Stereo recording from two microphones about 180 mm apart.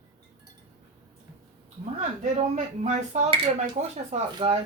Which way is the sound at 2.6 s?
40° right (ahead or behind).